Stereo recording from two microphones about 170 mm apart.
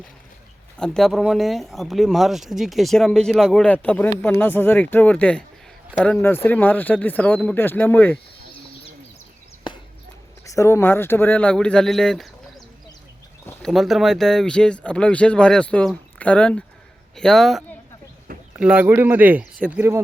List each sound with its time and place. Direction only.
0.8 s speech: centre (ahead or behind)
9.7 s a sound: 30° left (ahead or behind)
10.4 s speech: 20° left (ahead or behind); by 20.0 s 10° right (ahead or behind)